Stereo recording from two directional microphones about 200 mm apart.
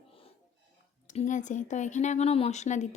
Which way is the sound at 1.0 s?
40° left (ahead or behind).